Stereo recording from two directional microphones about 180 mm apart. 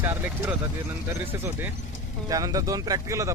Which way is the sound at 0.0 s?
10° right (ahead or behind).